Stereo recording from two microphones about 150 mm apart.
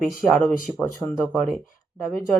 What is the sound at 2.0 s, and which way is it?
Speech, 20° left (ahead or behind).